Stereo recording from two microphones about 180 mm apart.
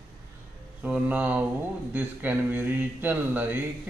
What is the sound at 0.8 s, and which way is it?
Speech, 5° right (ahead or behind).